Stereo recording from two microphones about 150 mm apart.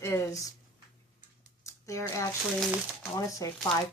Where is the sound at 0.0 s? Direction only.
20° left (ahead or behind).